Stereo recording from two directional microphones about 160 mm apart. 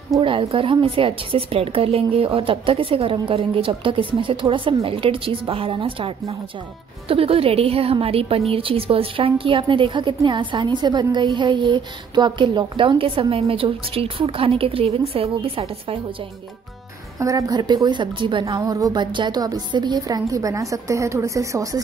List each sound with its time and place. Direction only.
0.2 s a woman's voice: 35° right (ahead or behind)
17.2 s a woman's voice: 20° right (ahead or behind)